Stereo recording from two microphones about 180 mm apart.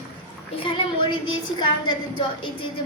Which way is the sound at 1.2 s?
25° left (ahead or behind).